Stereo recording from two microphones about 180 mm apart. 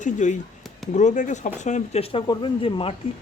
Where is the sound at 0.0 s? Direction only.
45° left (ahead or behind).